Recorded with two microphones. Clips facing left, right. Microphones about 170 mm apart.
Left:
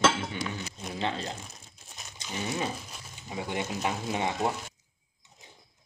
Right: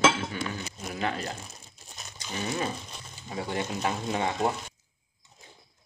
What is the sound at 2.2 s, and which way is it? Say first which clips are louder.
Speech: right 1 dB; 10° left (ahead or behind).